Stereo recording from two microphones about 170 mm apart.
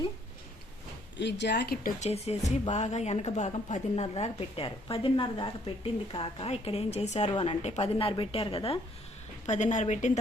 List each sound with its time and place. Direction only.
1.2 s speech: 90° left; by 2.0 s 55° left (ahead or behind)
2.0 s a woman's voice: 40° left (ahead or behind)
9.5 s a woman's voice: 45° left (ahead or behind)